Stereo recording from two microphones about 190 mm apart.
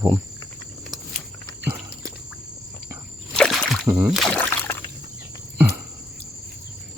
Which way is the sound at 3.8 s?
10° right (ahead or behind).